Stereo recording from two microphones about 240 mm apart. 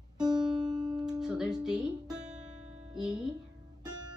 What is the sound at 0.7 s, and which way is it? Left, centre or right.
Speech, centre.